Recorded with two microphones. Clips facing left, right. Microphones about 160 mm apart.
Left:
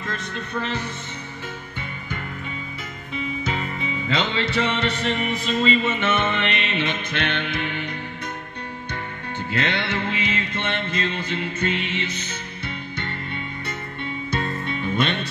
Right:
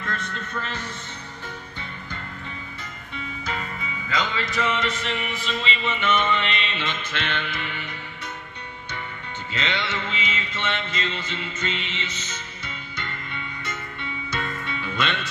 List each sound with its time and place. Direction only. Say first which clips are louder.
0.0 s speech: left 1 dB; 15° left (ahead or behind)
3.4 s music: left 4 dB; 25° left (ahead or behind); by 7.9 s 55° left (ahead or behind)
9.5 s music: left 3 dB; 55° left (ahead or behind)
14.4 s music: left 4 dB; 45° left (ahead or behind)